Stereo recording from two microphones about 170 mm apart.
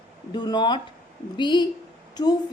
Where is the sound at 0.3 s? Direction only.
25° left (ahead or behind).